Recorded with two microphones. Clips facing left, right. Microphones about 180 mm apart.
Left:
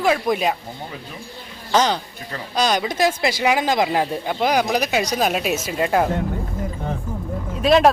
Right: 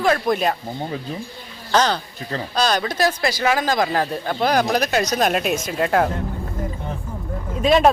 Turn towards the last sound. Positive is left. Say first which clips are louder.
# left 1 dB
turn(degrees=0)  # may be behind; listen again after turning